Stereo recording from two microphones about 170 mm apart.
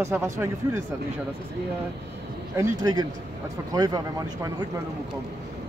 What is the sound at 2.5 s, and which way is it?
Speech, 20° right (ahead or behind).